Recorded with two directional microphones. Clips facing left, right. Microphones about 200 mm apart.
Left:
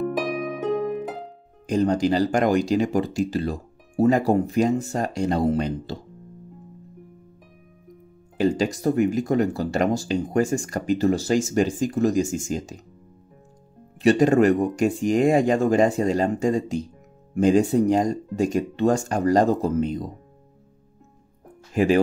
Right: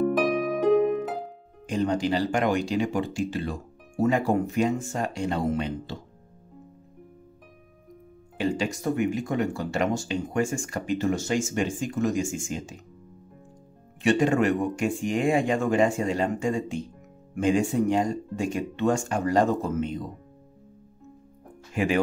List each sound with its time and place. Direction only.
1.7 s speech: 40° left (ahead or behind)
8.4 s speech: 40° left (ahead or behind)
14.0 s speech: 40° left (ahead or behind)
21.7 s speech: 35° left (ahead or behind)